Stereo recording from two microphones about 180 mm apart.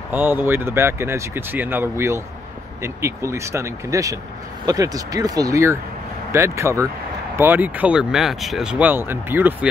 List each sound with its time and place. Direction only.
0.1 s speech: 10° right (ahead or behind)